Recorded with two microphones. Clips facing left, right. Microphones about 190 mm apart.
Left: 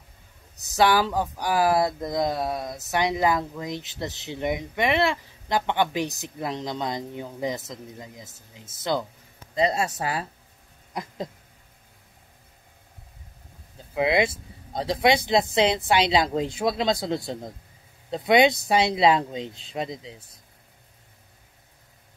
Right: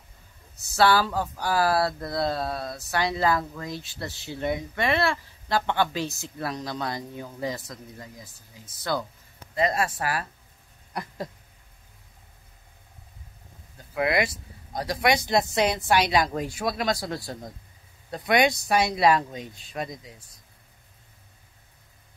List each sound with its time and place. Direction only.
0.7 s speech: 15° left (ahead or behind)
10.9 s a sound: 15° left (ahead or behind)
13.9 s speech: 20° left (ahead or behind)